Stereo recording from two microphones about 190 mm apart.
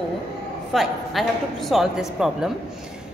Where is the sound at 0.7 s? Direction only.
Centre (ahead or behind).